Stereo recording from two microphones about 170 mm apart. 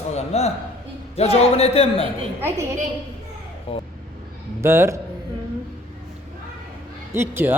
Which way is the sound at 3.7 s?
35° left (ahead or behind).